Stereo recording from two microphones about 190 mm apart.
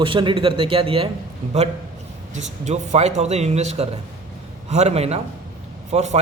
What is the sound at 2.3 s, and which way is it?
Speech, 40° right (ahead or behind).